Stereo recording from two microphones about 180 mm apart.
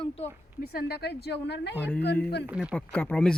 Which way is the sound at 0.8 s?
65° left (ahead or behind).